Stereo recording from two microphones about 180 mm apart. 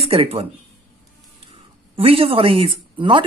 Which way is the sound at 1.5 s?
30° right (ahead or behind).